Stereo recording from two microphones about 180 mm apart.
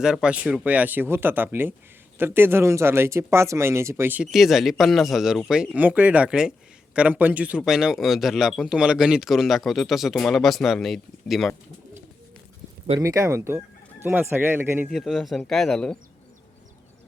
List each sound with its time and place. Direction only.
0.0 s speech: 5° right (ahead or behind)
13.0 s speech: 15° right (ahead or behind)
14.8 s speech: centre (ahead or behind)